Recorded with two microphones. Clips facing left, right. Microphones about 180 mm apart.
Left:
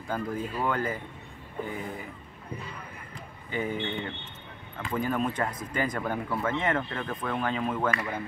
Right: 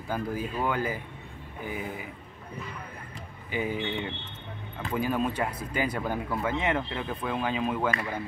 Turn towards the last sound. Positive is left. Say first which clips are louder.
# even
turn(degrees=-10)  # may be behind; listen again after turning